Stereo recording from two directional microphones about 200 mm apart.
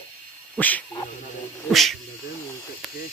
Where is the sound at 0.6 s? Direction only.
10° left (ahead or behind).